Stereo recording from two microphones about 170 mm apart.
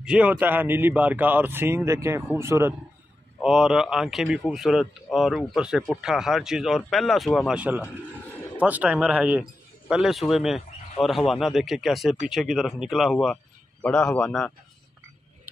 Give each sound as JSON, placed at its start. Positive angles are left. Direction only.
{"t": 0.0, "sound": "speech", "side_deg": -5}
{"t": 3.4, "sound": "a man's voice", "side_deg": -5}